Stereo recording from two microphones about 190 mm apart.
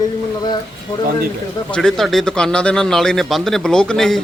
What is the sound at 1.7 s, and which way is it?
Speech, 5° left (ahead or behind).